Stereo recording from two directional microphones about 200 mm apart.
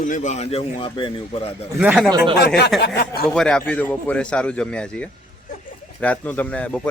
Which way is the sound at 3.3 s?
5° left (ahead or behind).